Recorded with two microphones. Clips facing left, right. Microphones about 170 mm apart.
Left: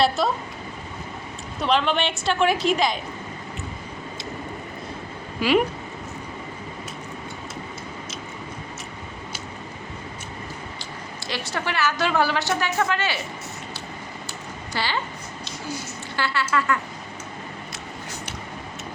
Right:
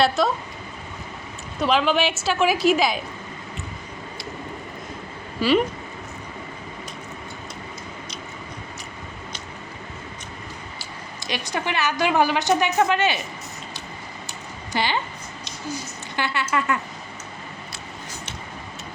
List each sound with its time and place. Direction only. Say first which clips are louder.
0.2 s a woman's voice: right 2 dB; centre (ahead or behind)
1.5 s a woman's voice: right 2 dB; 5° right (ahead or behind)
5.4 s speech: right 1 dB; 15° left (ahead or behind)
11.3 s a woman's voice: right 2 dB; 15° right (ahead or behind)
14.7 s a woman's voice: right 4 dB; 20° right (ahead or behind)
16.1 s speech: even; 20° right (ahead or behind)